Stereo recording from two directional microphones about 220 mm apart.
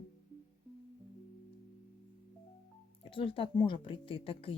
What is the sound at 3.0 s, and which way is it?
Speech, 25° left (ahead or behind).